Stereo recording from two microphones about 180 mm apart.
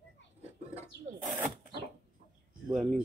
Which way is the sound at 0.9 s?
70° left (ahead or behind).